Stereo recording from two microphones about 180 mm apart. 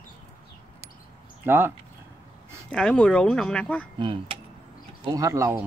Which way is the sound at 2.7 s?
5° left (ahead or behind).